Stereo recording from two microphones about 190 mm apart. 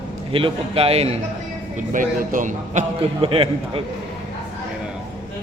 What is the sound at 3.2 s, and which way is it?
Speech, 30° right (ahead or behind).